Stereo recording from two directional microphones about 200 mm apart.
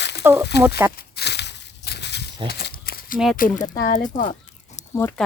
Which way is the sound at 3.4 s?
40° left (ahead or behind).